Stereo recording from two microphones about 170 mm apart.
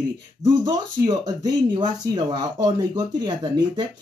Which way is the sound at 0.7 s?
25° right (ahead or behind).